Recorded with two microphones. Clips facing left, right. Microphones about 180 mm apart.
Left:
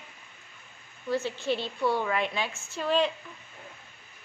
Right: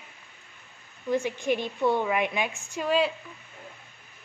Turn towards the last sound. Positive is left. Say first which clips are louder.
# right 1 dB
turn(degrees=-10)  # may be behind; listen again after turning